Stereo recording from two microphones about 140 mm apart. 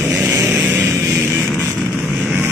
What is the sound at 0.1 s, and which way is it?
Vehicle, 20° right (ahead or behind).